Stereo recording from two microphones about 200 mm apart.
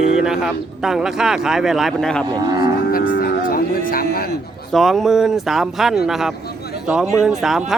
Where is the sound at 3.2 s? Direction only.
45° left (ahead or behind).